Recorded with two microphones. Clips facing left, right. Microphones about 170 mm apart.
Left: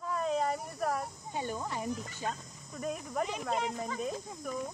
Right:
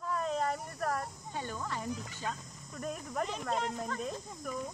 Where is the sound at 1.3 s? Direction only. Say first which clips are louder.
Left 3 dB; 15° left (ahead or behind).